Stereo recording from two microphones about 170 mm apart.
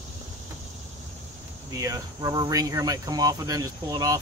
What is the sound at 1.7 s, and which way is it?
Speech, 20° right (ahead or behind).